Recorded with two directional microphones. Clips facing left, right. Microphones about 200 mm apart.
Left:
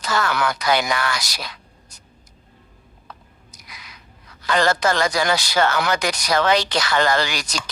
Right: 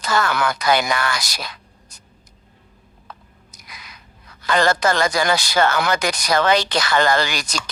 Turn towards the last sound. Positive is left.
turn(degrees=-50)  # may be behind; listen again after turning